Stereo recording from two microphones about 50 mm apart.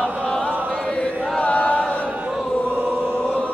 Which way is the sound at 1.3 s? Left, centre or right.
Left.